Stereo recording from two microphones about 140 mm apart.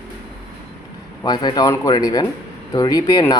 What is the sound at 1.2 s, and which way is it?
Speech, 30° left (ahead or behind).